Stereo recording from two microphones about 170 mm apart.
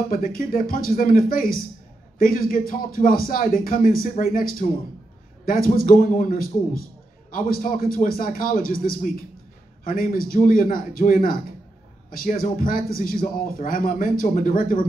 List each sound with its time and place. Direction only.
0.1 s a man's voice: 55° left (ahead or behind)